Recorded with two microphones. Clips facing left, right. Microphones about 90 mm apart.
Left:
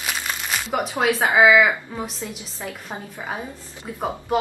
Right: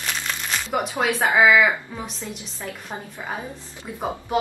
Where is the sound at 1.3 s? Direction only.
5° left (ahead or behind).